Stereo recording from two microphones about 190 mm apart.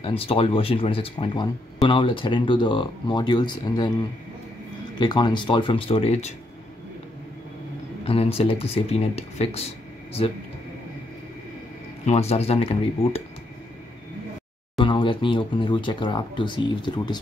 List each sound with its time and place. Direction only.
0.0 s speech: 30° left (ahead or behind)
4.9 s speech: 25° left (ahead or behind)
8.1 s speech: 30° left (ahead or behind)
12.1 s speech: 35° left (ahead or behind)
14.8 s speech: 25° left (ahead or behind)